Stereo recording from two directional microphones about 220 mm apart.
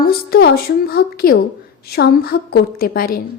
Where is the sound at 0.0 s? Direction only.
45° left (ahead or behind).